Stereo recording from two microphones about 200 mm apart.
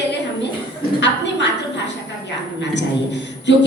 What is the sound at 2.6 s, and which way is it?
Speech, 60° left (ahead or behind).